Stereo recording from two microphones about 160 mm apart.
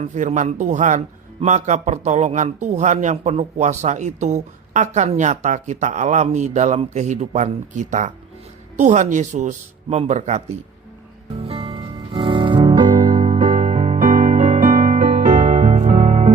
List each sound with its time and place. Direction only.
0.0 s a man's voice: 45° right (ahead or behind)
11.4 s music: 35° right (ahead or behind)
13.4 s music: 50° right (ahead or behind)